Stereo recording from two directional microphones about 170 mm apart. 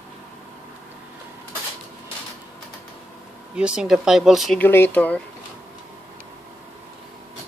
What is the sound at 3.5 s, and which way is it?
Speech, 5° right (ahead or behind).